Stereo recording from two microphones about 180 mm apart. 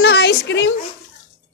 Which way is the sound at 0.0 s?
65° left (ahead or behind).